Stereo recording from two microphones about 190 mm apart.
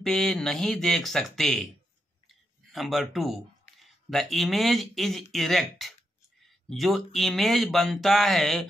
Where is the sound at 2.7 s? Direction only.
Centre (ahead or behind).